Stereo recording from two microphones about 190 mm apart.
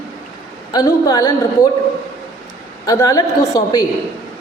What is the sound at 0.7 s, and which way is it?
Speech, 20° left (ahead or behind).